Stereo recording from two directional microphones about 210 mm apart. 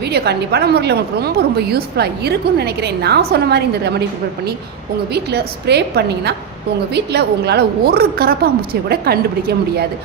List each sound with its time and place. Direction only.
0.0 s a woman's voice: 50° right (ahead or behind)
5.1 s a woman's voice: 50° right (ahead or behind)